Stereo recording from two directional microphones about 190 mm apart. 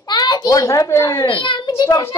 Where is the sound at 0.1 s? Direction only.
20° left (ahead or behind).